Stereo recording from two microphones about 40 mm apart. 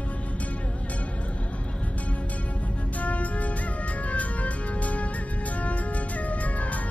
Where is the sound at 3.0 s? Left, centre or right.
Left.